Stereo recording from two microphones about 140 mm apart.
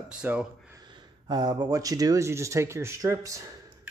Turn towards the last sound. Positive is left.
turn(degrees=-20)  # may be behind; listen again after turning